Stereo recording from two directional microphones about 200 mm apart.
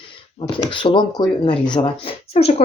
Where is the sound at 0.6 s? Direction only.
25° left (ahead or behind).